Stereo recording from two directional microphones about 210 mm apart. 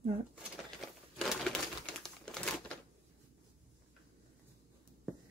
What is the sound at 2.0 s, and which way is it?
Crumpling, 5° left (ahead or behind).